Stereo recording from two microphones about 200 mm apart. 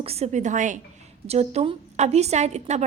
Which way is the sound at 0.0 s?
30° right (ahead or behind).